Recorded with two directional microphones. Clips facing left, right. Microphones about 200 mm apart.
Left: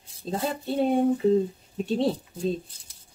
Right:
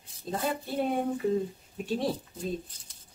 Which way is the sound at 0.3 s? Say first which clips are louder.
Left 4 dB; 25° left (ahead or behind).